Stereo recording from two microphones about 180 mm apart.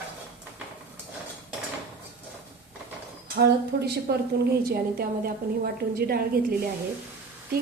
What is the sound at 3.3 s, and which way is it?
A woman's voice, 60° right (ahead or behind).